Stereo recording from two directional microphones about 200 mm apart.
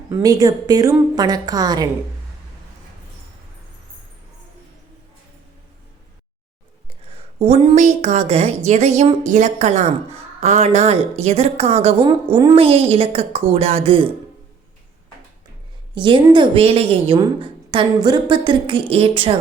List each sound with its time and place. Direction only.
0.1 s a woman's voice: 20° right (ahead or behind)
7.3 s a woman's voice: 30° right (ahead or behind)
16.0 s a woman's voice: 25° right (ahead or behind)